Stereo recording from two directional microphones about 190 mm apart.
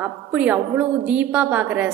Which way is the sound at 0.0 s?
10° right (ahead or behind).